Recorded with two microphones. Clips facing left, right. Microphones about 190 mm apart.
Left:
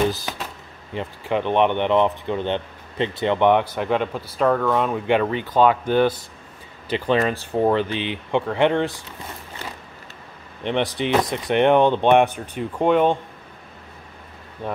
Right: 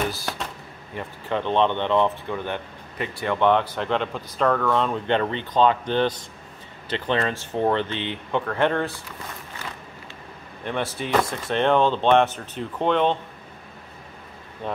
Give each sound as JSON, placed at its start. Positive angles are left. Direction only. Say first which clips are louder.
{"t": 0.9, "sound": "speech", "louder": "left 4 dB", "side_deg": 15}
{"t": 10.6, "sound": "speech", "louder": "left 5 dB", "side_deg": 20}